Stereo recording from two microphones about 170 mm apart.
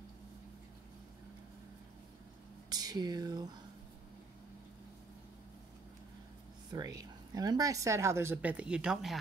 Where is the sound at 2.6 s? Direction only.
25° right (ahead or behind).